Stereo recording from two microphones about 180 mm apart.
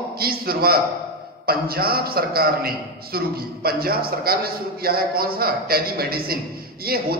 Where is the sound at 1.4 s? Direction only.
55° right (ahead or behind).